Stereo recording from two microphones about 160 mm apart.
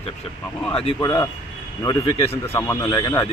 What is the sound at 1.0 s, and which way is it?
Speech, 20° left (ahead or behind).